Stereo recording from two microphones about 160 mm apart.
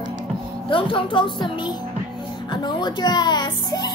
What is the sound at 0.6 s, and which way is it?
Music, 30° left (ahead or behind).